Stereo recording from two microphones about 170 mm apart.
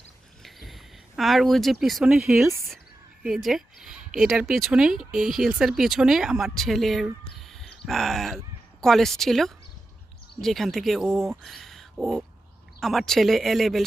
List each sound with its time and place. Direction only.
0.4 s speech: centre (ahead or behind)
2.5 s speech: 15° right (ahead or behind)
3.2 s a woman's voice: centre (ahead or behind)